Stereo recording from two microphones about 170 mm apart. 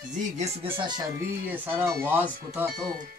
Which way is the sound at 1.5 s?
10° right (ahead or behind).